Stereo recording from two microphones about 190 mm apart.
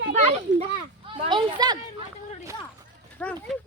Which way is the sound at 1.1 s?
25° right (ahead or behind).